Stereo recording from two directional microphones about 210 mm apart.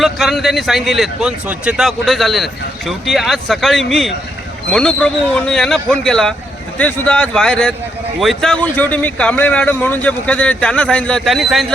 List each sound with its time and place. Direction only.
0.0 s a man's voice: centre (ahead or behind)